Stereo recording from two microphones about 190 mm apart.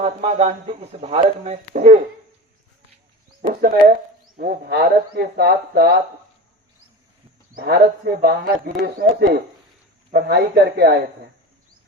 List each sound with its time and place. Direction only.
0.0 s speech: 35° right (ahead or behind)
3.6 s speech: 50° right (ahead or behind)
7.5 s speech: 55° right (ahead or behind)